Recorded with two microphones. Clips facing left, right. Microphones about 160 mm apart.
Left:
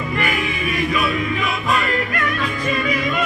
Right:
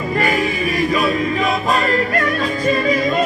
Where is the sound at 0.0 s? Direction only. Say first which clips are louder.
Right 4 dB; 35° right (ahead or behind).